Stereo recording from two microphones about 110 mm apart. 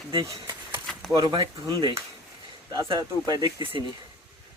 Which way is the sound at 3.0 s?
40° right (ahead or behind).